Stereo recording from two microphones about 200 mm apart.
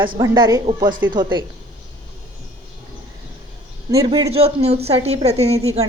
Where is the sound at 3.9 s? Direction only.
20° right (ahead or behind).